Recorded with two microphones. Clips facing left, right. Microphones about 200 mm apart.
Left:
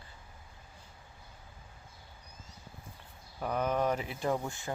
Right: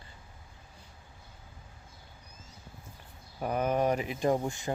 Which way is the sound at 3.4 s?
10° right (ahead or behind).